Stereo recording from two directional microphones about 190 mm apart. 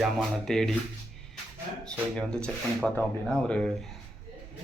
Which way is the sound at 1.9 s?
5° left (ahead or behind).